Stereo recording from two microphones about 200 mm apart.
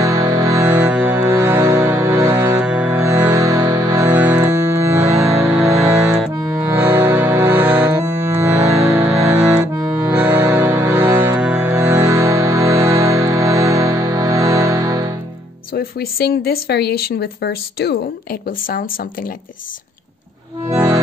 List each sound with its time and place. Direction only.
0.0 s music: 15° right (ahead or behind)
15.7 s speech: 50° left (ahead or behind)
20.6 s music: 15° right (ahead or behind)